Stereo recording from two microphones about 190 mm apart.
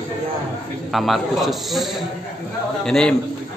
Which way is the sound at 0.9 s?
Centre (ahead or behind).